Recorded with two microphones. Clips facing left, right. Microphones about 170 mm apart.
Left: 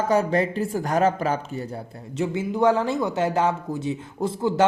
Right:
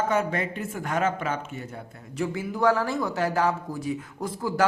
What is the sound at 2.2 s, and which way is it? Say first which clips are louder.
Speech: left 4 dB; 20° left (ahead or behind).